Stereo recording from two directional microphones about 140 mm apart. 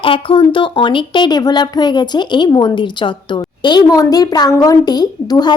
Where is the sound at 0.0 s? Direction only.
40° left (ahead or behind).